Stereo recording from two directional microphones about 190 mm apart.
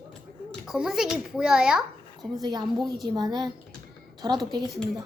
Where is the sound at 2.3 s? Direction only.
20° right (ahead or behind).